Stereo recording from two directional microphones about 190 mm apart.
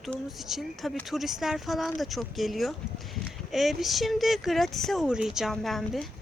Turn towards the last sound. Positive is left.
turn(degrees=0)  # may be behind; listen again after turning